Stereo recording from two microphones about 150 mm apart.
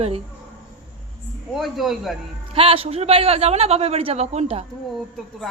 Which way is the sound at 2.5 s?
40° right (ahead or behind).